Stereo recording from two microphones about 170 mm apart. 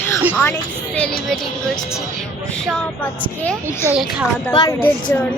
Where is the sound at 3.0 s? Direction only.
10° left (ahead or behind).